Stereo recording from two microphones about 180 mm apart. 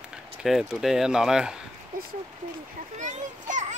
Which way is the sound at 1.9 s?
50° right (ahead or behind).